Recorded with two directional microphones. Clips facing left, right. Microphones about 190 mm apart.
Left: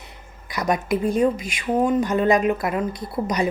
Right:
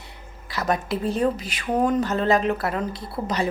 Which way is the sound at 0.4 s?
15° left (ahead or behind).